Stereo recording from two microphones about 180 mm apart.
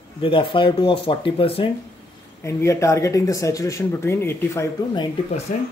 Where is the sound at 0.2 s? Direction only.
30° left (ahead or behind).